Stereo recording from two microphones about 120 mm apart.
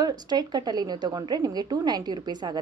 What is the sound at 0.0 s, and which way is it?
A woman's voice, 35° right (ahead or behind).